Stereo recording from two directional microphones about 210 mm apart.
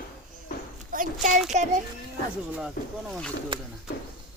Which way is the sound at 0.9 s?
40° right (ahead or behind).